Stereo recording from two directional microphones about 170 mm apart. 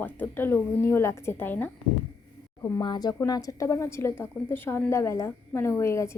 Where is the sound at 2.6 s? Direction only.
25° left (ahead or behind).